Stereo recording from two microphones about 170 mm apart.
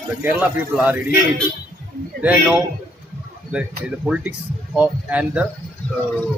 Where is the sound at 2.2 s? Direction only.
5° right (ahead or behind).